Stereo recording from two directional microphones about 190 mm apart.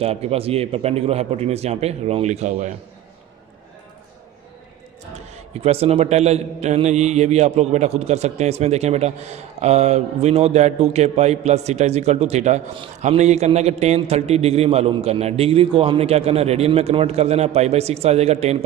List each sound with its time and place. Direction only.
0.0 s a man's voice: 30° right (ahead or behind)
5.5 s a man's voice: 30° right (ahead or behind)